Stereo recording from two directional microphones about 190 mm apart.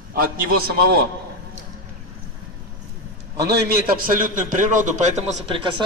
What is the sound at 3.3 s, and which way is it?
A man's voice, 60° right (ahead or behind).